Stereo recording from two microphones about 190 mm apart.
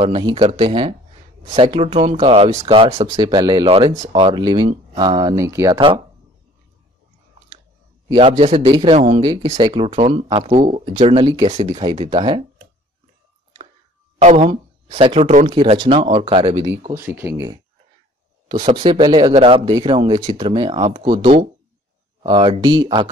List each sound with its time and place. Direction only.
0.0 s speech: 25° right (ahead or behind)
3.1 s speech: 20° right (ahead or behind)
4.1 s speech: 25° right (ahead or behind)
8.1 s speech: 30° right (ahead or behind)
14.1 s speech: 30° right (ahead or behind)
16.8 s speech: 10° right (ahead or behind)
18.5 s speech: 30° right (ahead or behind)